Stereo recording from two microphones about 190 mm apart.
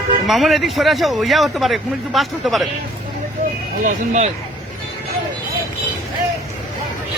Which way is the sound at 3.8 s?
35° right (ahead or behind).